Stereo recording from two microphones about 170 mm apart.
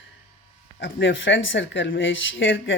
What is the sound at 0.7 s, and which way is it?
Speech, 90° left.